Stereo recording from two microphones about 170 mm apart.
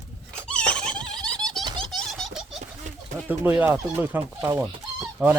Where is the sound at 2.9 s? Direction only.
45° right (ahead or behind).